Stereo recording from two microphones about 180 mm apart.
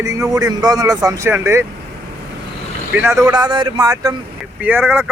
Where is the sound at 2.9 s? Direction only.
15° right (ahead or behind).